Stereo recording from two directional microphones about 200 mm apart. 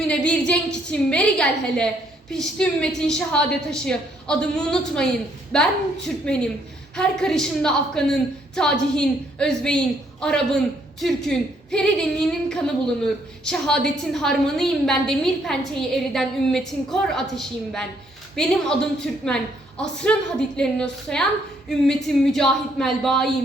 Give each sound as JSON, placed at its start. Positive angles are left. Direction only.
{"t": 0.1, "sound": "a woman's voice", "side_deg": 5}